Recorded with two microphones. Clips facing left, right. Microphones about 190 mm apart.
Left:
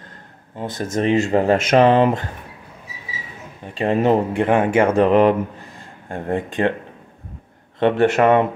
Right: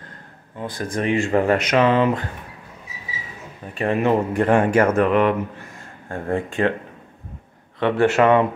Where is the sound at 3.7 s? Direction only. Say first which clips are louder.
Left 2 dB; 35° left (ahead or behind).